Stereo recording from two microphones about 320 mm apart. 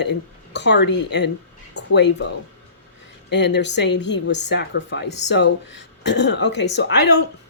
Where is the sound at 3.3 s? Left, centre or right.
Left.